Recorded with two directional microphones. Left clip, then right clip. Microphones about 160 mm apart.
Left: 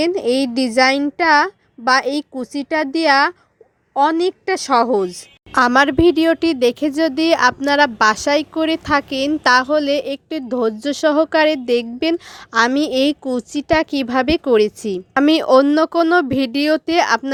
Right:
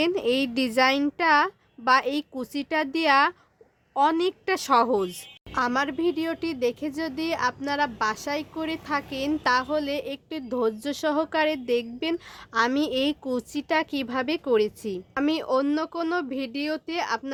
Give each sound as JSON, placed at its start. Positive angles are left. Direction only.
{"t": 0.0, "sound": "a child's voice", "side_deg": 25}
{"t": 5.5, "sound": "speech", "side_deg": 50}